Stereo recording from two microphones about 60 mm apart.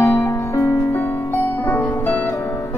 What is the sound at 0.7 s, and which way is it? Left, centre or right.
Music, left.